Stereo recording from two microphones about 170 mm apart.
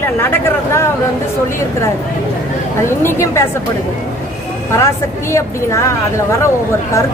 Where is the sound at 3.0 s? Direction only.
15° left (ahead or behind).